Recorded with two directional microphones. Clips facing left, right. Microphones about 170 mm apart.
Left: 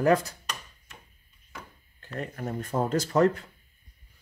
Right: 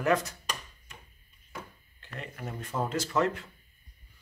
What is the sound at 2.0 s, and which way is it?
Speech, 40° left (ahead or behind).